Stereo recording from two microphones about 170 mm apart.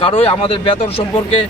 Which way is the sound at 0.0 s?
30° left (ahead or behind).